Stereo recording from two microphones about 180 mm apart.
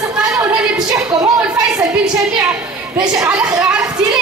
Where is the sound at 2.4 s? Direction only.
5° right (ahead or behind).